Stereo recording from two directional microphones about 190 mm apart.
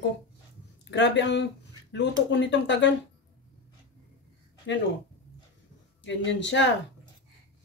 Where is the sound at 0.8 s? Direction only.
65° left (ahead or behind).